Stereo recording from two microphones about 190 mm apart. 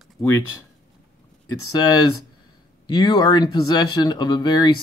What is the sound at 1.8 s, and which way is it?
Speech, 20° left (ahead or behind).